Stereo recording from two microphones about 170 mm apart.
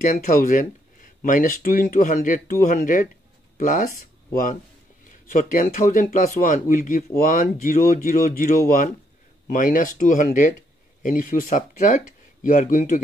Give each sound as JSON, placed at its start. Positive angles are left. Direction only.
{"t": 0.0, "sound": "speech", "side_deg": 50}
{"t": 5.3, "sound": "speech", "side_deg": 50}